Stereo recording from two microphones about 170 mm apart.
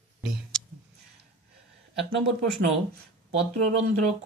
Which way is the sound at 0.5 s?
5° left (ahead or behind).